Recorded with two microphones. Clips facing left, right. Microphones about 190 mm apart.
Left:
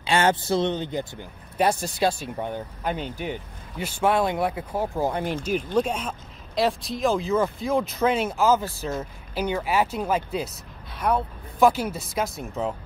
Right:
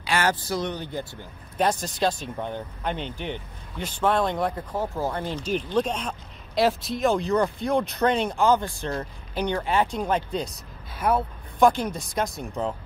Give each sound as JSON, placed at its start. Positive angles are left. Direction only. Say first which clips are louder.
{"t": 0.0, "sound": "speech", "louder": "left 3 dB", "side_deg": 25}
{"t": 1.6, "sound": "speech", "louder": "left 1 dB", "side_deg": 10}